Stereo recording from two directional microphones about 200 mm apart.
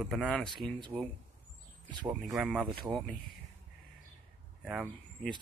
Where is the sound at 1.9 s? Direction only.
25° right (ahead or behind).